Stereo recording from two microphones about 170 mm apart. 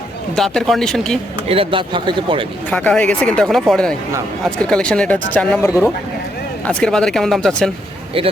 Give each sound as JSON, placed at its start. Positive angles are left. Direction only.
{"t": 0.3, "sound": "speech", "side_deg": 0}
{"t": 1.5, "sound": "speech", "side_deg": -30}
{"t": 2.6, "sound": "speech", "side_deg": 5}